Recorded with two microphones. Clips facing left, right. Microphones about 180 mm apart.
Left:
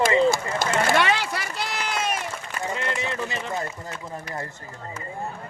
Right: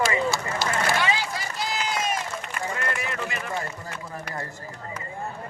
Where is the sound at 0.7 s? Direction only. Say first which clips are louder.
Left 4 dB; 65° left (ahead or behind).